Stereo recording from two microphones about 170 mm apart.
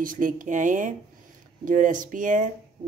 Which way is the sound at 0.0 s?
55° right (ahead or behind).